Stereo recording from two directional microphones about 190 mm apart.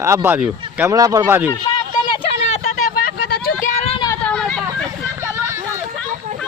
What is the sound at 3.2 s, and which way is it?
Vehicle, 55° left (ahead or behind).